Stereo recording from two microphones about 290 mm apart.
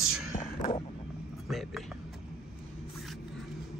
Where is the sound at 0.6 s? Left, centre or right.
Left.